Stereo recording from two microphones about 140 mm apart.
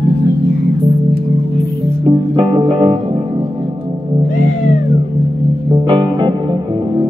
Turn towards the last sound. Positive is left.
turn(degrees=-40)  # may be behind; listen again after turning